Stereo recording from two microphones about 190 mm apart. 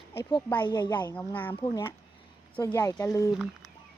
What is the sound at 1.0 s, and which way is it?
Speech, 10° left (ahead or behind).